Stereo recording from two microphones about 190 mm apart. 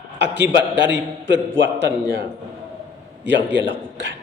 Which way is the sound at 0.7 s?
70° right (ahead or behind).